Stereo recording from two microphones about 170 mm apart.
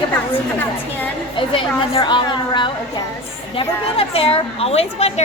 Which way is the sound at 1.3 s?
30° left (ahead or behind).